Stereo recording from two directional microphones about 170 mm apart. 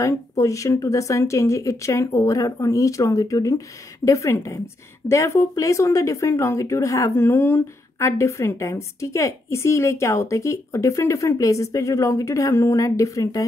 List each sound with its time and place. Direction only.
0.0 s speech: 20° left (ahead or behind)